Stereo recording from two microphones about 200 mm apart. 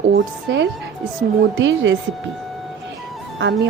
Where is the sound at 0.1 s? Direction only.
65° right (ahead or behind).